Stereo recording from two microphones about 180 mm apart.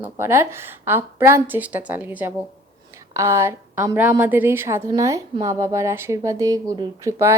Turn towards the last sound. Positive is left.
turn(degrees=-15)  # may be behind; listen again after turning